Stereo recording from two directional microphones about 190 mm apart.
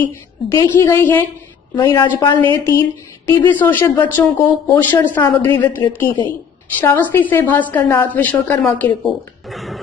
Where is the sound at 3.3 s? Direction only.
10° left (ahead or behind).